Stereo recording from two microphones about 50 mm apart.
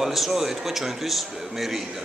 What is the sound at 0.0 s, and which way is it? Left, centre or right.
A man's voice, centre.